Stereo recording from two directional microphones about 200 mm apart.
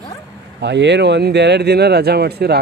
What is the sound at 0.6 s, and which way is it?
Speech, 60° right (ahead or behind).